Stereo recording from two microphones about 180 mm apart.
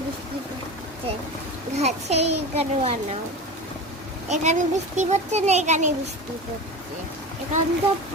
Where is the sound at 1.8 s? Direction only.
40° right (ahead or behind).